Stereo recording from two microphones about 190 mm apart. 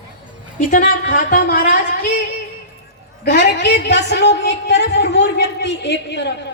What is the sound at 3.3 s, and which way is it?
A woman's voice, 60° left (ahead or behind).